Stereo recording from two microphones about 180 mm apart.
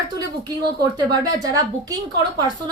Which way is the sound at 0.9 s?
20° right (ahead or behind).